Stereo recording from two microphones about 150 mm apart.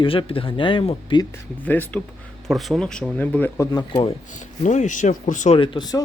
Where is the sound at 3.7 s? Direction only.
35° left (ahead or behind).